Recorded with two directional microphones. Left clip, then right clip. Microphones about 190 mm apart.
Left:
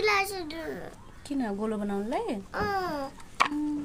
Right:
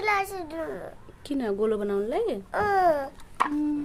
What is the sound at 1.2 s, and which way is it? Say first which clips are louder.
A woman's voice: right 6 dB; 35° right (ahead or behind).